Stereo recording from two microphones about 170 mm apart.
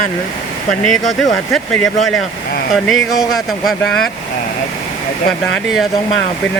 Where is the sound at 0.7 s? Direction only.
Centre (ahead or behind).